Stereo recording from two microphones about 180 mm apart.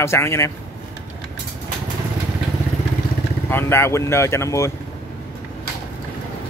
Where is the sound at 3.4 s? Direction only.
15° left (ahead or behind).